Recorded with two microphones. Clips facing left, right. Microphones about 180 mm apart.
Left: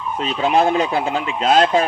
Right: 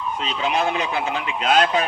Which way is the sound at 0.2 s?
45° left (ahead or behind).